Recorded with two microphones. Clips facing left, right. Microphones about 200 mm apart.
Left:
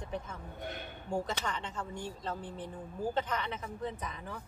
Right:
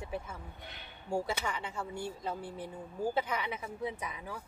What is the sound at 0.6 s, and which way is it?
Speech, 50° left (ahead or behind).